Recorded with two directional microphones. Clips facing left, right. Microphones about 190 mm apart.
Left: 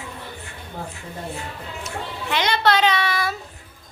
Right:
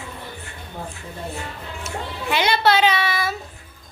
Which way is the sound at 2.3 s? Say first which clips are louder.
Right 1 dB; 10° right (ahead or behind).